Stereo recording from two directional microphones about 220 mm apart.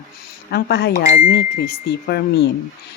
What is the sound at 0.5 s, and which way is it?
Speech, 50° left (ahead or behind).